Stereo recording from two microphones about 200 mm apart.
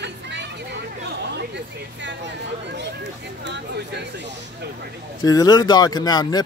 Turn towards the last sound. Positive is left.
turn(degrees=20)  # may be behind; listen again after turning